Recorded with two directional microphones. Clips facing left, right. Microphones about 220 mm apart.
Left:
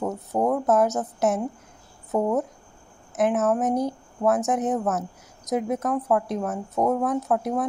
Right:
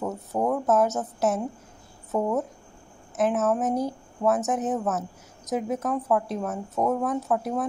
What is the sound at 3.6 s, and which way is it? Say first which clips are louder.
A woman's voice: left 2 dB; 15° left (ahead or behind).